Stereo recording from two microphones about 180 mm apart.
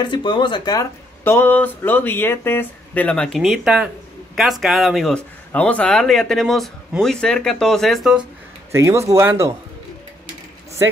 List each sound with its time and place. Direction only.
0.0 s speech: 25° left (ahead or behind); by 8.2 s centre (ahead or behind)
8.7 s speech: 15° right (ahead or behind)